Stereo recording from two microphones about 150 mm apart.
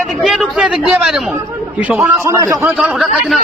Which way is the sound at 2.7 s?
5° right (ahead or behind).